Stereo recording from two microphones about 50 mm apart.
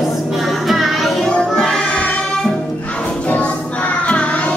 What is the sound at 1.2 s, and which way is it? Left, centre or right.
Music, centre.